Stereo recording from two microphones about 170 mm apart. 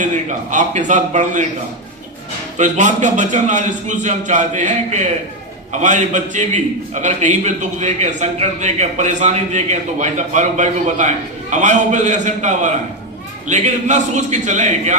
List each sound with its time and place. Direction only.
0.0 s a man's voice: 45° right (ahead or behind)
2.6 s a man's voice: 45° right (ahead or behind)